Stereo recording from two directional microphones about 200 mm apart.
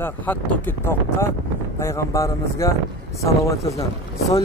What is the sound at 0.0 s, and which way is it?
Speech, 10° left (ahead or behind).